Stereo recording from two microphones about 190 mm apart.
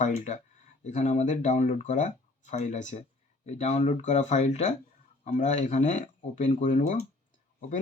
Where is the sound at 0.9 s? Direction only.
40° left (ahead or behind).